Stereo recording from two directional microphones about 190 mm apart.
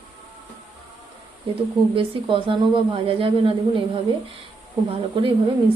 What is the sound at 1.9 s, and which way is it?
A woman's voice, 25° right (ahead or behind).